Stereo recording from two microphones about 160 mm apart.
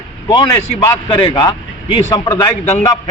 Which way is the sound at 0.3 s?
25° left (ahead or behind).